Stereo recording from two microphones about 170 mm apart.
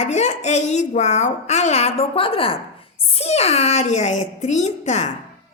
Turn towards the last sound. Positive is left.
turn(degrees=40)  # may be behind; listen again after turning